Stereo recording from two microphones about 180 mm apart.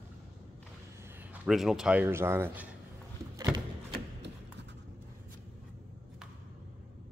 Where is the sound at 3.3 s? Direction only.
15° right (ahead or behind).